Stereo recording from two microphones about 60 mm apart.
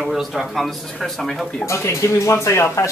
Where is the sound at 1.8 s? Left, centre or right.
Left.